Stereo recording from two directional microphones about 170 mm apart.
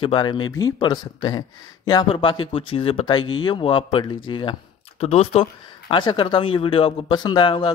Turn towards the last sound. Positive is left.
turn(degrees=30)  # may be behind; listen again after turning